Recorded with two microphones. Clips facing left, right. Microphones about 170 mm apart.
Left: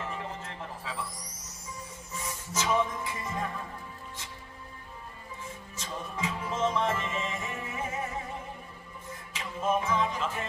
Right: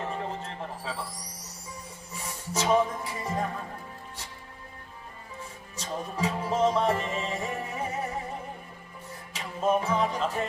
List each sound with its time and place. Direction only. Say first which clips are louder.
0.0 s a sound: right 4 dB; 35° right (ahead or behind)
2.1 s music: right 2 dB; 35° right (ahead or behind)
5.7 s music: right 5 dB; 35° right (ahead or behind)
9.3 s music: right 3 dB; 35° right (ahead or behind)